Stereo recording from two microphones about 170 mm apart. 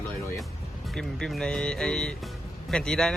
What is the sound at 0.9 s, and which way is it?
Speech, 5° left (ahead or behind).